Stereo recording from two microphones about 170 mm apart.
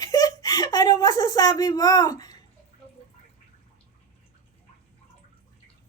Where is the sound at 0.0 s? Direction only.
25° left (ahead or behind).